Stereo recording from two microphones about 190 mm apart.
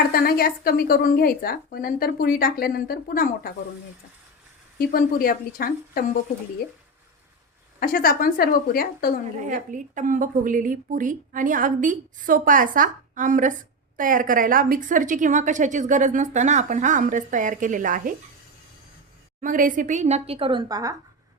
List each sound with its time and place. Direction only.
0.1 s speech: 50° left (ahead or behind)
4.8 s speech: 50° left (ahead or behind)
7.8 s speech: 50° left (ahead or behind)
9.7 s a woman's voice: 40° right (ahead or behind)
19.4 s speech: 45° right (ahead or behind); by 20.9 s 20° right (ahead or behind)